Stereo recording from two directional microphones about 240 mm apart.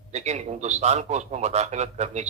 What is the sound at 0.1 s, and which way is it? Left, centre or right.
A man's voice, right.